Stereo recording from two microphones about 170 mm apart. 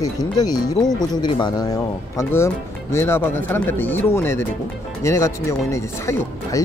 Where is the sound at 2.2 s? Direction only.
15° left (ahead or behind).